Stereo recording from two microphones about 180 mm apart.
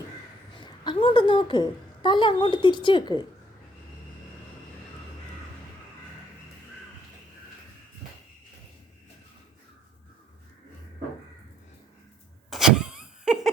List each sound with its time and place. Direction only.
0.6 s a woman's voice: 25° left (ahead or behind)
12.5 s vehicle: centre (ahead or behind)